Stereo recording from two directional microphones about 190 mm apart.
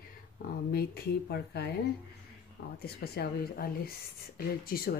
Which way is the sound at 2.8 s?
55° left (ahead or behind).